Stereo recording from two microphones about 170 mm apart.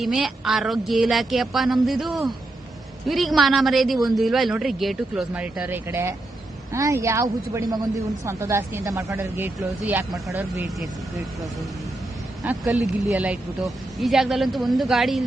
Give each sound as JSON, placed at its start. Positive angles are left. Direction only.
{"t": 0.0, "sound": "a man's voice", "side_deg": 0}
{"t": 12.4, "sound": "a man's voice", "side_deg": 0}